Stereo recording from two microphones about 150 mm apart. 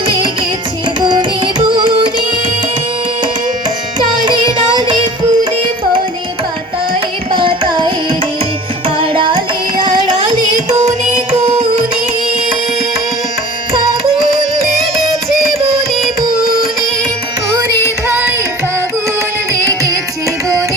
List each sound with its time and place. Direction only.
1.0 s music: 30° right (ahead or behind)
4.3 s carnatic music: 30° right (ahead or behind)
7.3 s carnatic music: 35° right (ahead or behind)
9.0 s carnatic music: 35° right (ahead or behind)
10.8 s music: 50° right (ahead or behind)
15.4 s music: centre (ahead or behind)